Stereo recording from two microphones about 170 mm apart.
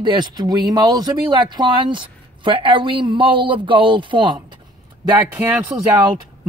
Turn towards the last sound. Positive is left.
turn(degrees=-15)  # may be behind; listen again after turning